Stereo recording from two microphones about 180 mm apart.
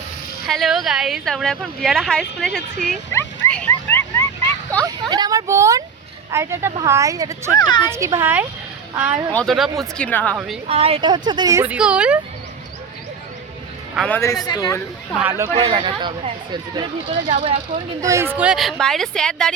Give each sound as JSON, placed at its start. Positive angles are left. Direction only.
{"t": 0.4, "sound": "speech", "side_deg": 0}
{"t": 4.8, "sound": "a woman's voice", "side_deg": -25}
{"t": 7.6, "sound": "speech", "side_deg": 25}
{"t": 7.9, "sound": "a woman's voice", "side_deg": -15}
{"t": 9.3, "sound": "speech", "side_deg": 5}
{"t": 10.3, "sound": "speech", "side_deg": 0}
{"t": 10.7, "sound": "speech", "side_deg": -30}
{"t": 13.9, "sound": "a man's voice", "side_deg": 0}
{"t": 14.4, "sound": "speech", "side_deg": 20}
{"t": 15.2, "sound": "a woman's voice", "side_deg": -15}
{"t": 15.5, "sound": "speech", "side_deg": -30}
{"t": 18.0, "sound": "speech", "side_deg": -15}